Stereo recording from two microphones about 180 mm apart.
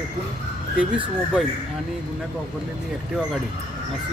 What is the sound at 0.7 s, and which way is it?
Speech, 5° right (ahead or behind).